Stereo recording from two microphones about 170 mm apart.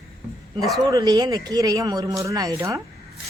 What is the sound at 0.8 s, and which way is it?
Speech, 25° right (ahead or behind).